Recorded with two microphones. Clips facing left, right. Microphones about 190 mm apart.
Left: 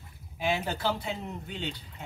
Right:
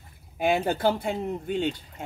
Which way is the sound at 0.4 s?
55° right (ahead or behind).